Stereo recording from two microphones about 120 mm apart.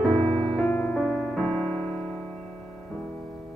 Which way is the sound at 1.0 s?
5° left (ahead or behind).